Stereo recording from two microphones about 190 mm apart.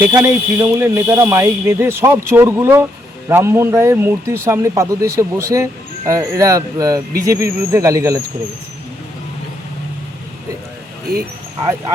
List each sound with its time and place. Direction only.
0.0 s speech: 15° right (ahead or behind)